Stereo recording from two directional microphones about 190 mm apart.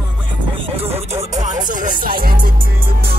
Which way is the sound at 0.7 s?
30° right (ahead or behind).